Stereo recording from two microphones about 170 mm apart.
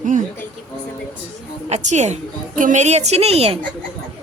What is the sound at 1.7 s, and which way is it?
A woman's voice, 40° right (ahead or behind).